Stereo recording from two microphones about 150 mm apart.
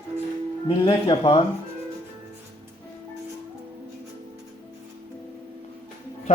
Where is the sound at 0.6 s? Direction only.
35° left (ahead or behind).